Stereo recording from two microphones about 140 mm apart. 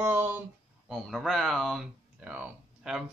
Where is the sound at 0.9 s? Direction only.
Centre (ahead or behind).